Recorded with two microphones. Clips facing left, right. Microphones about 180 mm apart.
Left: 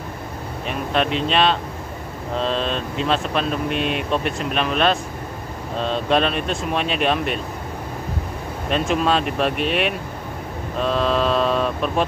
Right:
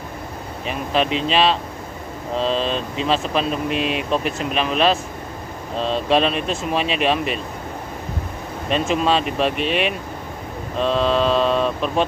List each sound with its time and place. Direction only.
0.7 s speech: centre (ahead or behind)
8.6 s speech: centre (ahead or behind)
10.8 s mantra: centre (ahead or behind)